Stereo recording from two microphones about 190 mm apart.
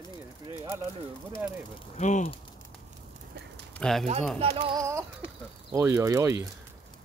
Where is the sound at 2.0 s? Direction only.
40° left (ahead or behind).